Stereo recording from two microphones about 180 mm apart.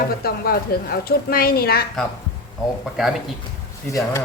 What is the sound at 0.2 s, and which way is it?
A woman's voice, 60° left (ahead or behind).